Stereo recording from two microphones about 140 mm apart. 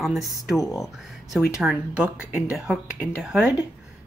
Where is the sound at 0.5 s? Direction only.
25° left (ahead or behind).